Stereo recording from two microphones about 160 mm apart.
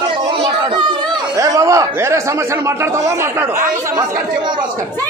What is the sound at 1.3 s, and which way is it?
Speech, 20° right (ahead or behind).